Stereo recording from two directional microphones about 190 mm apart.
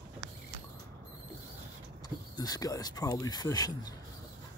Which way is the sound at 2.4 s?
20° left (ahead or behind).